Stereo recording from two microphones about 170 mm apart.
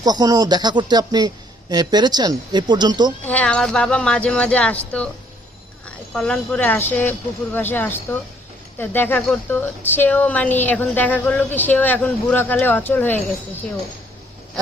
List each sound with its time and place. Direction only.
0.0 s a woman's voice: 20° right (ahead or behind)
3.2 s speech: 10° left (ahead or behind)
6.1 s speech: 5° left (ahead or behind)